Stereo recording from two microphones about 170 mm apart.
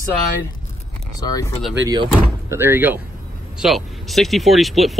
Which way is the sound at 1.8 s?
25° right (ahead or behind).